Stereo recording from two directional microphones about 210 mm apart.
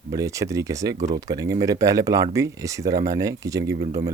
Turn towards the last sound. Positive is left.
turn(degrees=-15)  # may be behind; listen again after turning